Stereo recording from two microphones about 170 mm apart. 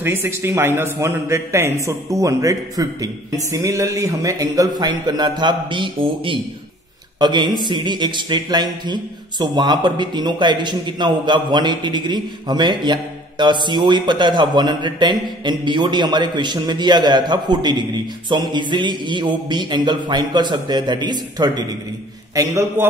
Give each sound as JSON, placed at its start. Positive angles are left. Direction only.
{"t": 0.0, "sound": "a man's voice", "side_deg": -15}